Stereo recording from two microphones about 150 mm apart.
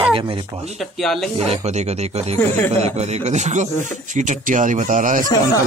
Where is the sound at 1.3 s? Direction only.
45° right (ahead or behind).